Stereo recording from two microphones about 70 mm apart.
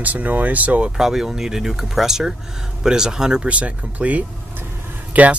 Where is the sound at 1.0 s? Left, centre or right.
Centre.